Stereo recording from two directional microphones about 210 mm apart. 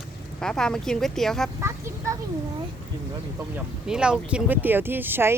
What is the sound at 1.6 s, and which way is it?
Speech, 15° right (ahead or behind).